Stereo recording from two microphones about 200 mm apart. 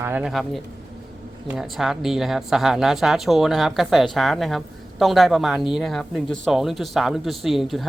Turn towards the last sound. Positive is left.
turn(degrees=0)  # may be behind; listen again after turning